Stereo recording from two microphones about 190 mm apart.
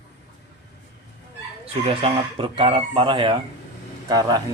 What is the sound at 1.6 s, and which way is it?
Speech, 30° right (ahead or behind).